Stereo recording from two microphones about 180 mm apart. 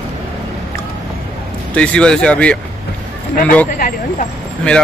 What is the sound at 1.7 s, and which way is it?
Speech, 5° left (ahead or behind).